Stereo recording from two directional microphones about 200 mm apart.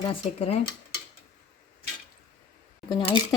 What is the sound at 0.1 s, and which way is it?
Speech, 30° left (ahead or behind).